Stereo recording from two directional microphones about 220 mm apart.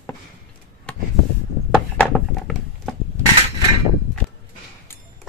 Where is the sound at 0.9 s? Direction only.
5° left (ahead or behind).